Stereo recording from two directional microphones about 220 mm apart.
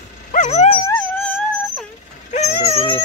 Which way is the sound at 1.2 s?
5° left (ahead or behind).